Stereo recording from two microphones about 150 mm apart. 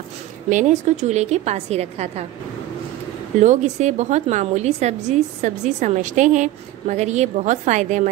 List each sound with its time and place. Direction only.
0.5 s a woman's voice: 55° right (ahead or behind)
3.3 s a woman's voice: 55° right (ahead or behind)